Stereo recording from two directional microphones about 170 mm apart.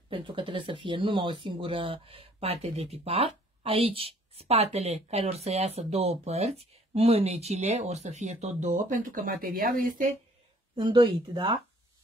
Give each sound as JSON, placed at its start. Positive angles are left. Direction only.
{"t": 0.1, "sound": "speech", "side_deg": -30}
{"t": 10.8, "sound": "speech", "side_deg": -30}